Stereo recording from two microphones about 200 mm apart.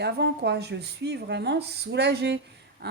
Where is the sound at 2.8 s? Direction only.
50° right (ahead or behind).